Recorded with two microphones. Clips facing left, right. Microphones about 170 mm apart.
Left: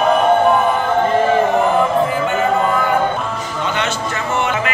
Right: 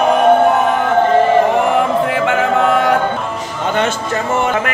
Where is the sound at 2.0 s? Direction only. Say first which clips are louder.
Right 2 dB; 85° right.